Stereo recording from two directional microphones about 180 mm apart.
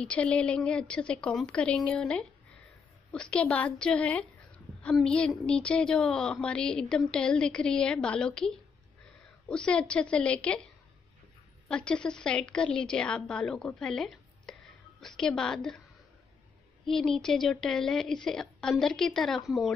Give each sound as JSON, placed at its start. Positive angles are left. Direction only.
{"t": 0.0, "sound": "a woman's voice", "side_deg": 5}
{"t": 11.7, "sound": "a woman's voice", "side_deg": 5}
{"t": 16.8, "sound": "speech", "side_deg": 0}